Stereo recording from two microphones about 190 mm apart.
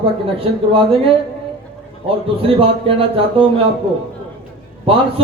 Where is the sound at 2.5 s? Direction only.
30° right (ahead or behind).